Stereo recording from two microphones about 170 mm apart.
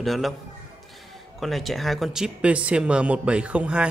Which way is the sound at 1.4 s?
Centre (ahead or behind).